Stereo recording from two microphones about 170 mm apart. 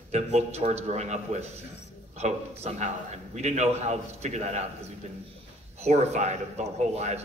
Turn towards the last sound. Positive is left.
turn(degrees=-40)  # may be behind; listen again after turning